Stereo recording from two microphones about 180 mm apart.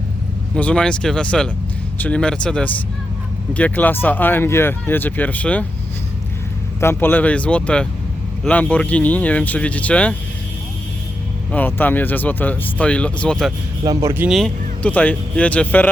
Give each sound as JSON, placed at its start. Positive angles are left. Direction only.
{"t": 0.5, "sound": "speech", "side_deg": 5}
{"t": 6.7, "sound": "speech", "side_deg": 10}
{"t": 11.5, "sound": "speech", "side_deg": 10}
{"t": 13.8, "sound": "speech", "side_deg": -20}
{"t": 14.3, "sound": "speech", "side_deg": 0}